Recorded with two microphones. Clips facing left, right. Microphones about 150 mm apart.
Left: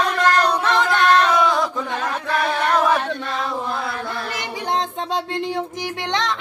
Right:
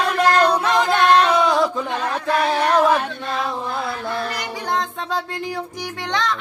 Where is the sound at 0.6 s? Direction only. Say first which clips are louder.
Right 1 dB; 15° right (ahead or behind).